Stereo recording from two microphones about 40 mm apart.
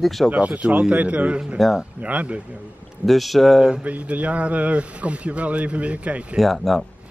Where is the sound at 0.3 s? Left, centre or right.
Right.